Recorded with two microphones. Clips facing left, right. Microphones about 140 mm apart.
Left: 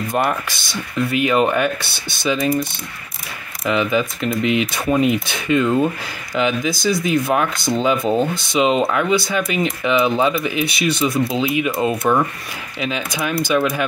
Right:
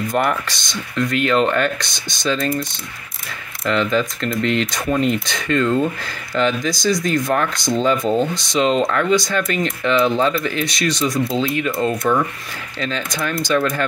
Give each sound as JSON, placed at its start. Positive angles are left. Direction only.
{"t": 0.1, "sound": "speech", "side_deg": 5}
{"t": 3.6, "sound": "speech", "side_deg": 10}
{"t": 12.0, "sound": "speech", "side_deg": 20}
{"t": 12.8, "sound": "speech", "side_deg": 10}